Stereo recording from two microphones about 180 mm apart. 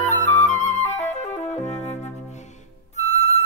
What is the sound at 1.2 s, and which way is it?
Music, 40° left (ahead or behind).